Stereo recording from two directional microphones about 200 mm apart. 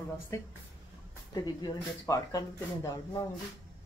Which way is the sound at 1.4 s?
20° left (ahead or behind).